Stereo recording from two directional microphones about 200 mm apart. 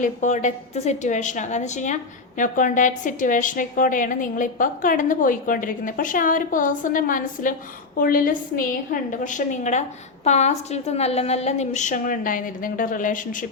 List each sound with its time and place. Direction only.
0.0 s a woman's voice: 35° left (ahead or behind)